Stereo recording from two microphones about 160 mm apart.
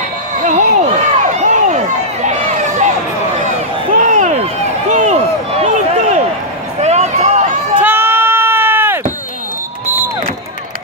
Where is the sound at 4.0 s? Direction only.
50° right (ahead or behind).